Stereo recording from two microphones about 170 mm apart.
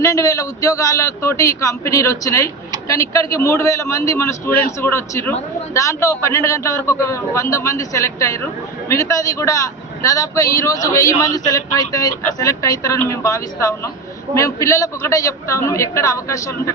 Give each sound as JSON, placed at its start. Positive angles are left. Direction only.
{"t": 0.0, "sound": "a man's voice", "side_deg": 20}